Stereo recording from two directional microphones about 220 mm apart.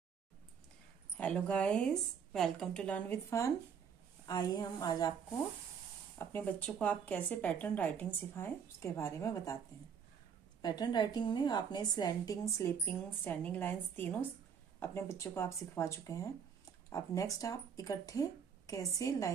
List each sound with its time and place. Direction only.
1.1 s a woman's voice: 5° left (ahead or behind)
6.1 s a woman's voice: 5° left (ahead or behind)
10.6 s a woman's voice: 20° left (ahead or behind)